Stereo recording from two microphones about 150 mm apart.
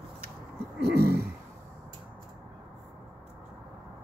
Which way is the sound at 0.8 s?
90° right.